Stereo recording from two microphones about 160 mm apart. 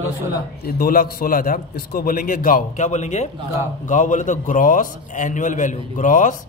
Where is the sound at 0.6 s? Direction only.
65° left (ahead or behind).